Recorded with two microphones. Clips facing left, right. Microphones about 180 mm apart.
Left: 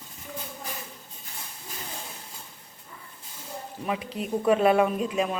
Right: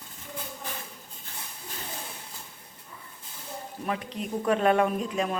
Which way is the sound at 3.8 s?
5° left (ahead or behind).